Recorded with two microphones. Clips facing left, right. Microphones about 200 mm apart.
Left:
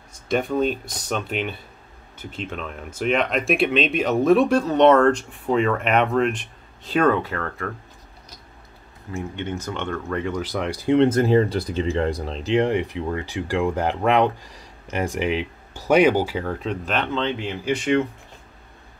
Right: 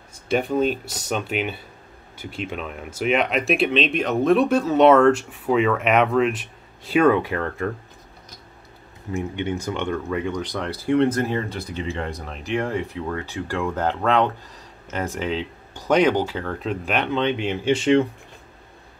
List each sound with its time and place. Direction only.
0.3 s speech: 5° right (ahead or behind)
7.4 s speech: 25° right (ahead or behind)
9.1 s speech: 15° right (ahead or behind); by 11.0 s 15° left (ahead or behind)
11.0 s speech: 25° left (ahead or behind); by 16.6 s 5° left (ahead or behind)
16.6 s speech: 10° right (ahead or behind); by 18.0 s 30° right (ahead or behind)